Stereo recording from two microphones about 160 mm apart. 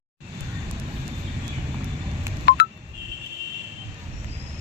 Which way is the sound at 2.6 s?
90° left.